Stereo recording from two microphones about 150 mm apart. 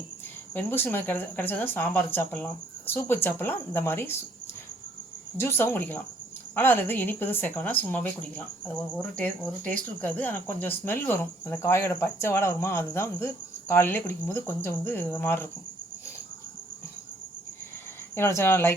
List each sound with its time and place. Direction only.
0.5 s speech: 15° left (ahead or behind)
5.4 s speech: 15° left (ahead or behind)
18.1 s speech: 15° left (ahead or behind)